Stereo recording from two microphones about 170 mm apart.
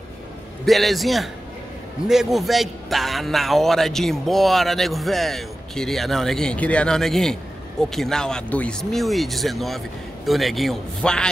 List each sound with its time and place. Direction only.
0.7 s a man's voice: centre (ahead or behind)